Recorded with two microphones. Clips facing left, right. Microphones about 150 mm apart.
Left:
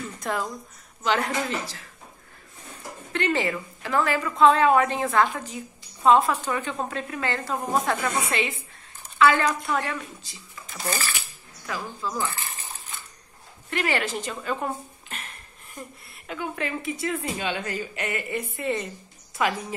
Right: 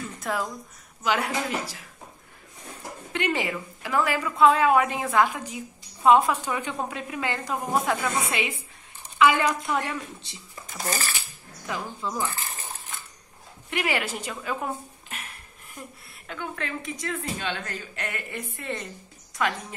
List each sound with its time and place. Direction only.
0.2 s a woman's voice: 5° right (ahead or behind)
3.1 s a woman's voice: 15° right (ahead or behind)
10.9 s speech: 35° right (ahead or behind)
11.6 s a woman's voice: 20° right (ahead or behind)
13.7 s a woman's voice: 10° right (ahead or behind)
16.3 s a woman's voice: 5° left (ahead or behind)